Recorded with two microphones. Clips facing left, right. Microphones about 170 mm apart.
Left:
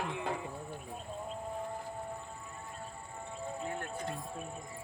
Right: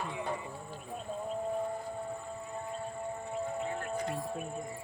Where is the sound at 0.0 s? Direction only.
85° left.